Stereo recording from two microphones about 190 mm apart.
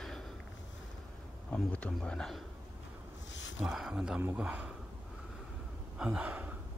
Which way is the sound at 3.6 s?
5° right (ahead or behind).